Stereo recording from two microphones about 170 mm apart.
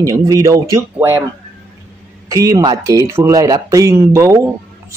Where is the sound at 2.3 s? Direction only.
20° right (ahead or behind).